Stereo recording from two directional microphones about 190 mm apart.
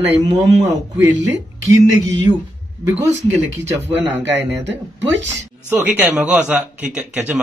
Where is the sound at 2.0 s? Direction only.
15° right (ahead or behind).